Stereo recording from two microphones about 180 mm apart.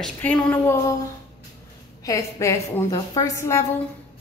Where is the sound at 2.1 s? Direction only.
15° left (ahead or behind).